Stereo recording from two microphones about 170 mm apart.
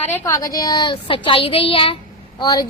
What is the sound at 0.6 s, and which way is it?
Child singing, 25° left (ahead or behind).